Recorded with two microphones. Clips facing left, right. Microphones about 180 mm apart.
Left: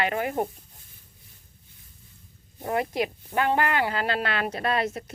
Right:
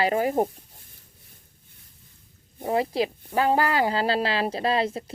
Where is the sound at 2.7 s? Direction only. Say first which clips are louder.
Right 2 dB; 30° right (ahead or behind).